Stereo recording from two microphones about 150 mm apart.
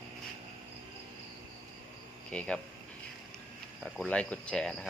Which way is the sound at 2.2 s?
5° left (ahead or behind).